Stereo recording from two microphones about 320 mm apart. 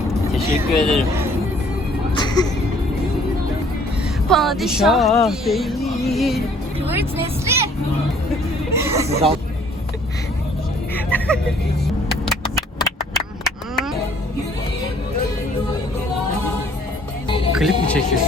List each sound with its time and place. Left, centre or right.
0.1 s vehicle: centre
2.1 s music: centre
4.3 s speech: centre
8.7 s a sound: centre
9.0 s speech: centre
10.9 s vehicle: centre
12.2 s a sound: centre
17.2 s music: centre
17.6 s music: centre